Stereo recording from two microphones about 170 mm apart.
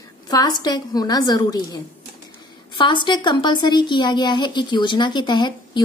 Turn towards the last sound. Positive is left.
turn(degrees=25)  # may be behind; listen again after turning